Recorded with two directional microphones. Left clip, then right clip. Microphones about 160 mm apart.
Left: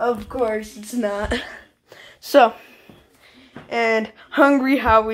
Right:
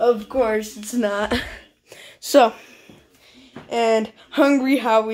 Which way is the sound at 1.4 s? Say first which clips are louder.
Even; 20° right (ahead or behind).